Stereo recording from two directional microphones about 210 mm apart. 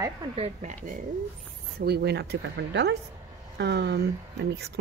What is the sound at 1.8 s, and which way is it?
Speech, 50° right (ahead or behind).